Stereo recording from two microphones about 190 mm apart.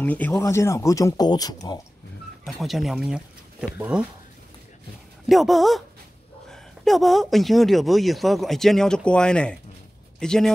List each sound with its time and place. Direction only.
0.0 s speech: 10° left (ahead or behind)
2.4 s speech: centre (ahead or behind)
5.3 s speech: centre (ahead or behind)